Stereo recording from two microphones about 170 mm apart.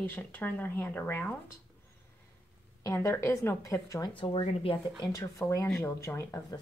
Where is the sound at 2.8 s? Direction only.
20° left (ahead or behind).